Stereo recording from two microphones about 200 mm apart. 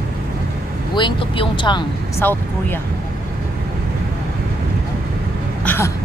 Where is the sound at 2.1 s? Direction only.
10° left (ahead or behind).